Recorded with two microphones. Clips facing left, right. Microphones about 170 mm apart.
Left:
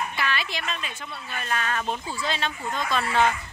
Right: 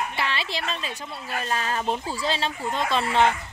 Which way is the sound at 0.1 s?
25° right (ahead or behind).